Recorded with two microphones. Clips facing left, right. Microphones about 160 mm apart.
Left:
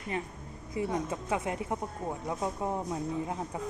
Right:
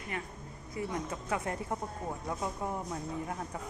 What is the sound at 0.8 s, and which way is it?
A woman's voice, 20° left (ahead or behind).